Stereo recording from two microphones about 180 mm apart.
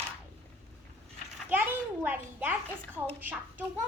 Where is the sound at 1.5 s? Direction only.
10° right (ahead or behind).